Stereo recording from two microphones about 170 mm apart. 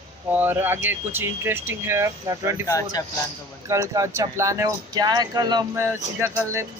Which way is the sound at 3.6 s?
15° right (ahead or behind).